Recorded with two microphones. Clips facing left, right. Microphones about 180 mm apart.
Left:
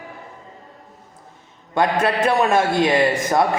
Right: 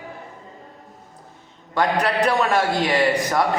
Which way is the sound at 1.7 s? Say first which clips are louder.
Left 2 dB; 25° left (ahead or behind).